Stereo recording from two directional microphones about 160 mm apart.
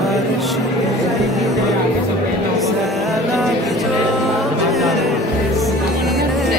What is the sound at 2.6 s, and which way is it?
Music, centre (ahead or behind).